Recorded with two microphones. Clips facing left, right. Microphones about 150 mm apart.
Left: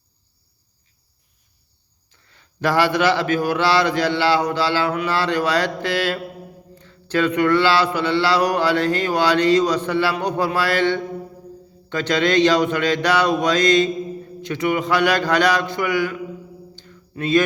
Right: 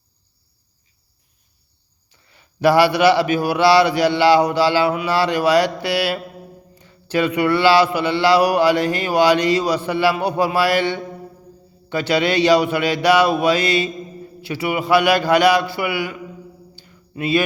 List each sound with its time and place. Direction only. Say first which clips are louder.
2.0 s speech: right 2 dB; 15° right (ahead or behind)
16.7 s mantra: right 2 dB; 10° right (ahead or behind)